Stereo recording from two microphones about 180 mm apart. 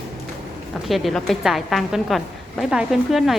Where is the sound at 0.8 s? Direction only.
Centre (ahead or behind).